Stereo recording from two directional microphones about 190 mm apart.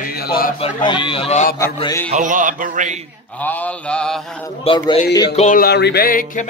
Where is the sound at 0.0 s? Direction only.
55° left (ahead or behind).